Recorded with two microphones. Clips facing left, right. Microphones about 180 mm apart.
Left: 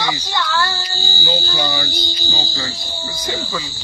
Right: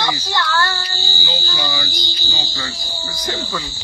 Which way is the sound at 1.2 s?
45° left (ahead or behind).